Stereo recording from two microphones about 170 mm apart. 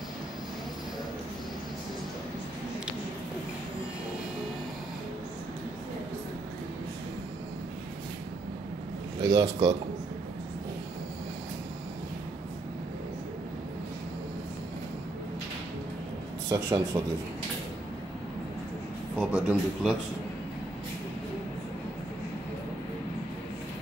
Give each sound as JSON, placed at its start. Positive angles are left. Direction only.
{"t": 9.2, "sound": "speech", "side_deg": -25}
{"t": 16.4, "sound": "speech", "side_deg": -20}
{"t": 19.1, "sound": "a man's voice", "side_deg": -5}